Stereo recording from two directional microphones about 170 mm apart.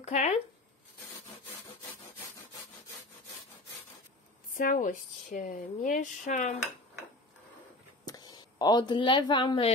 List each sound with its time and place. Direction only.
0.0 s a sound: 40° left (ahead or behind)
4.6 s speech: 50° left (ahead or behind)
8.0 s speech: 25° left (ahead or behind)